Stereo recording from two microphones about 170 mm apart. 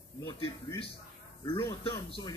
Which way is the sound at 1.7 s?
25° left (ahead or behind).